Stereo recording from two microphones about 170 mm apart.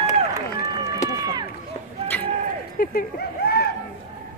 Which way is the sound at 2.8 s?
60° left (ahead or behind).